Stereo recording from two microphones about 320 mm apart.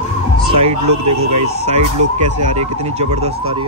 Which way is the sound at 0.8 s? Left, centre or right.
Right.